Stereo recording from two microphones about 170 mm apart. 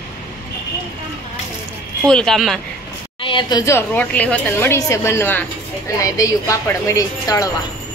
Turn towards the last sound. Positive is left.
turn(degrees=20)  # may be behind; listen again after turning